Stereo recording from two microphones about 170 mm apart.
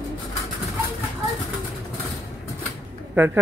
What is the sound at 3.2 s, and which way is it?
Speech, 10° right (ahead or behind).